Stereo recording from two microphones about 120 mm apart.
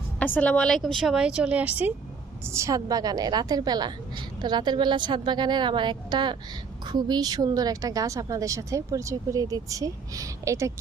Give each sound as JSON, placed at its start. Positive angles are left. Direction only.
{"t": 0.2, "sound": "a woman's voice", "side_deg": 10}
{"t": 2.5, "sound": "a woman's voice", "side_deg": -25}